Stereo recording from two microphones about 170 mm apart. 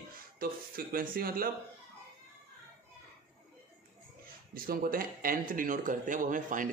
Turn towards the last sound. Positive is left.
turn(degrees=-50)  # may be behind; listen again after turning